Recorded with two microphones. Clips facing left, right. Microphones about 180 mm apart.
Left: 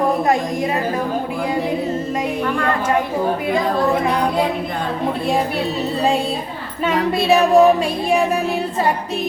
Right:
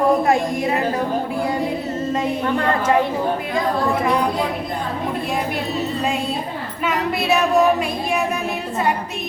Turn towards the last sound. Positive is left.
turn(degrees=30)  # may be behind; listen again after turning